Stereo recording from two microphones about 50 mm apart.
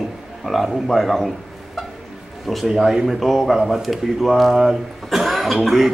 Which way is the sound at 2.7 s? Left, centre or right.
Centre.